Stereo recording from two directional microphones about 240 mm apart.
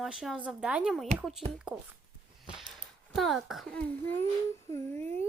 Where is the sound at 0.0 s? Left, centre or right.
Centre.